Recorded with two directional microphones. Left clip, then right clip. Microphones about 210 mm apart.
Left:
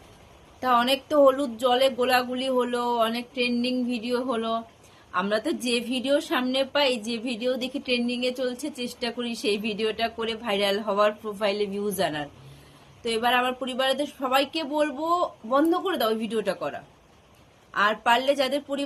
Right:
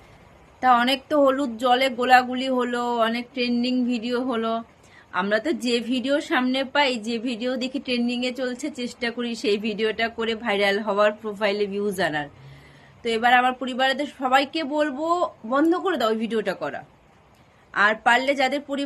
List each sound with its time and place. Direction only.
0.6 s a woman's voice: 20° left (ahead or behind)